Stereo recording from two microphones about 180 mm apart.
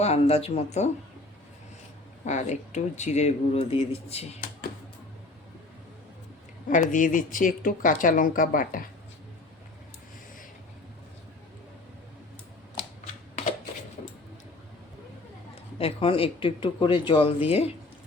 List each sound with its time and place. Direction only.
0.0 s speech: 35° left (ahead or behind)
2.2 s speech: 40° left (ahead or behind)
6.7 s speech: 45° left (ahead or behind)
15.8 s speech: 30° left (ahead or behind)